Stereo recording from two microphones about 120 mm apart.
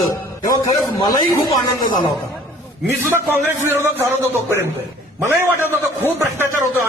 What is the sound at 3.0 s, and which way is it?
A man's voice, 20° right (ahead or behind).